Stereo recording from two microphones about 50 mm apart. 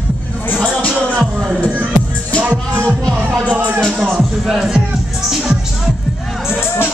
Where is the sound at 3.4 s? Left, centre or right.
Right.